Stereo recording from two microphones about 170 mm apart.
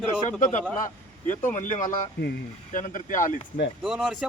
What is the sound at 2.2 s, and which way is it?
Speech, 90° left.